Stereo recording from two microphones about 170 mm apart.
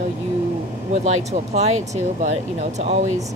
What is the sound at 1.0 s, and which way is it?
Speech, 40° right (ahead or behind).